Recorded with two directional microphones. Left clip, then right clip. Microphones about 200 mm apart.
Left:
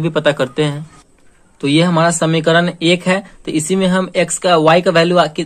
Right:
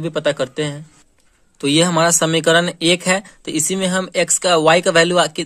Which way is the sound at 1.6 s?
35° right (ahead or behind).